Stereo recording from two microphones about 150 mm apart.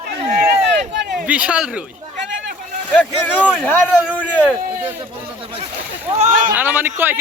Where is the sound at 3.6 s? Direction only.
10° left (ahead or behind).